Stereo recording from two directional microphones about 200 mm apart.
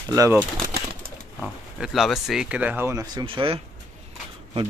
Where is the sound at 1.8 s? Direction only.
Centre (ahead or behind); by 3.5 s 20° right (ahead or behind).